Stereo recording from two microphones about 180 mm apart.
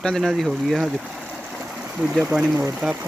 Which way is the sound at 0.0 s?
5° left (ahead or behind).